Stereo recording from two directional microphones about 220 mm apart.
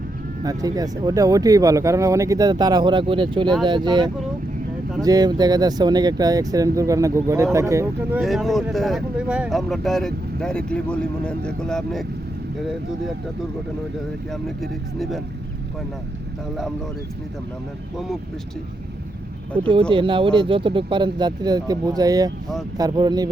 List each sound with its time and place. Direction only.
0.4 s speech: 15° right (ahead or behind)
8.2 s speech: centre (ahead or behind)
14.4 s speech: centre (ahead or behind)
19.5 s speech: 25° right (ahead or behind)